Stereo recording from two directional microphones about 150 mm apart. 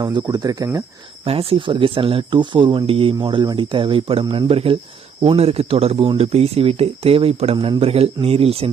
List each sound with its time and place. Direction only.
0.0 s speech: 30° right (ahead or behind)
1.2 s speech: 40° right (ahead or behind)